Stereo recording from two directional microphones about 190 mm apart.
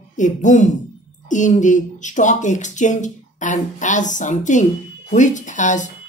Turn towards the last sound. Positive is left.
turn(degrees=40)  # may be behind; listen again after turning